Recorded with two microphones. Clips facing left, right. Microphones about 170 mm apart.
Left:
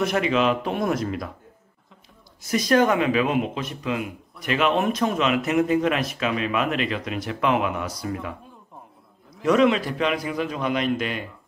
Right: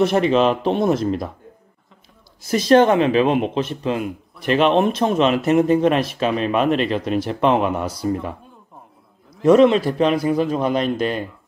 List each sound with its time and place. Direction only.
0.0 s speech: 30° right (ahead or behind)
2.4 s speech: 30° right (ahead or behind)
9.4 s speech: 30° right (ahead or behind)